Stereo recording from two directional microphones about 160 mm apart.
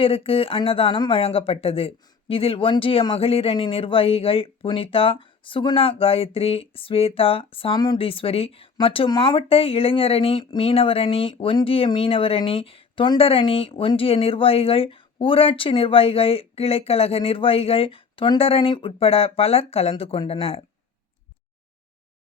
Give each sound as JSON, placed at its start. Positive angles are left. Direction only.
{"t": 0.0, "sound": "speech", "side_deg": 35}